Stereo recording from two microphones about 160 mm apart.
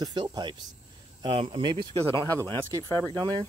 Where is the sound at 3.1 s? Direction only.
30° right (ahead or behind).